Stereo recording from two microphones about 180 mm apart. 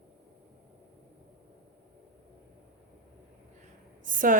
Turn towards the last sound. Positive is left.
turn(degrees=-45)  # may be behind; listen again after turning